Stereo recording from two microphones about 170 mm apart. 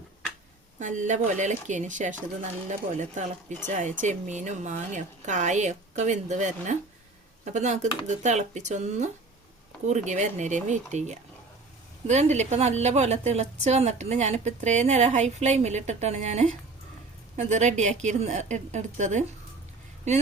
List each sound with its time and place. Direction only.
0.8 s a woman's voice: 45° right (ahead or behind)